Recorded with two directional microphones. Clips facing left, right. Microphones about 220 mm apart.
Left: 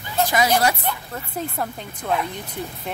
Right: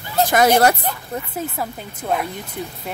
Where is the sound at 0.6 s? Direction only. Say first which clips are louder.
Right 5 dB; 50° right (ahead or behind).